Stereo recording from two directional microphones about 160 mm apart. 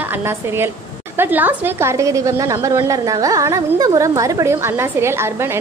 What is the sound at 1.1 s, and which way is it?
A woman's voice, 10° right (ahead or behind).